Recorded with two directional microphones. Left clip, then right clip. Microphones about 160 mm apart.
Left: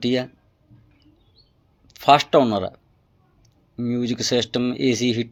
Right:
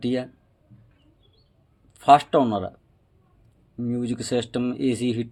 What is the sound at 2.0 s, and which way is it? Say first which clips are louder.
Speech: left 1 dB; 15° left (ahead or behind).